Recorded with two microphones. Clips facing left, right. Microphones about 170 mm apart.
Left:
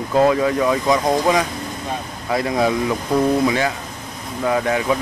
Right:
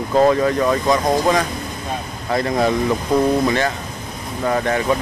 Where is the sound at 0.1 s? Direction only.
5° left (ahead or behind).